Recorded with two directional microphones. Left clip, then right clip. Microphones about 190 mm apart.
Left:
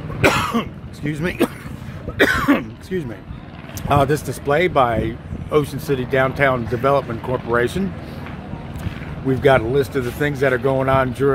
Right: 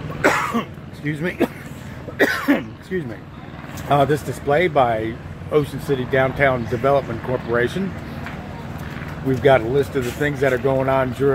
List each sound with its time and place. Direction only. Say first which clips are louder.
0.2 s throat clearing: left 1 dB; 25° left (ahead or behind)
2.1 s speech: left 2 dB; 25° left (ahead or behind)
9.4 s speech: even; 15° left (ahead or behind)